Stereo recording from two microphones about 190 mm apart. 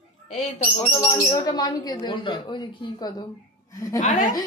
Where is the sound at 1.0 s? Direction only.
20° left (ahead or behind).